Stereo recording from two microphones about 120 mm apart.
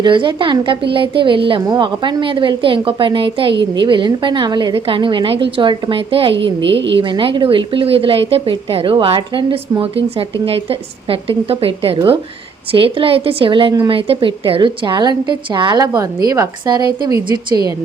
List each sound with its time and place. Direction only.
0.0 s a woman's voice: 40° right (ahead or behind)